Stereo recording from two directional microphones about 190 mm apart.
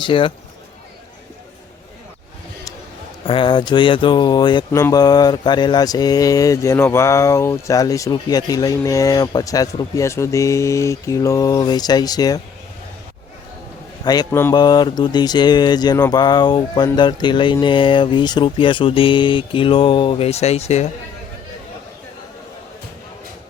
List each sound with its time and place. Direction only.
0.0 s speech: 25° left (ahead or behind)
3.2 s speech: 25° left (ahead or behind)
14.0 s a man's voice: 20° left (ahead or behind)
14.5 s speech: 20° left (ahead or behind)